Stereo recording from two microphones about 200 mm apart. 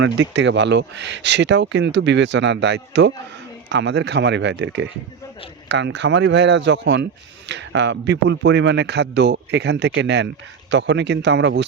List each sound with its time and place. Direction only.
0.0 s speech: 60° right (ahead or behind)